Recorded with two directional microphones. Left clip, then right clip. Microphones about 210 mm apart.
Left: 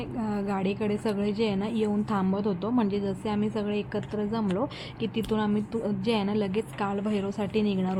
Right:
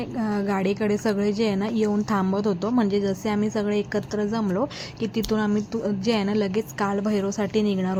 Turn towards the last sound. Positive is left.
turn(degrees=-15)  # may be behind; listen again after turning